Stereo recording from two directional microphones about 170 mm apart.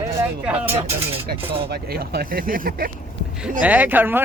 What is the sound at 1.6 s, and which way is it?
Speech, 70° right (ahead or behind).